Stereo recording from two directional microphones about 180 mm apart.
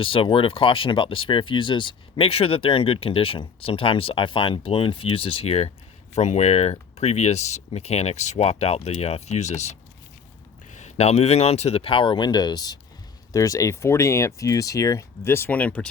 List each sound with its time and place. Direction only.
0.0 s speech: 30° left (ahead or behind); by 15.9 s 5° left (ahead or behind)